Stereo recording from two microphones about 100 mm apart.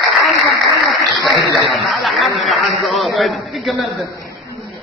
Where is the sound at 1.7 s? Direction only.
Centre (ahead or behind).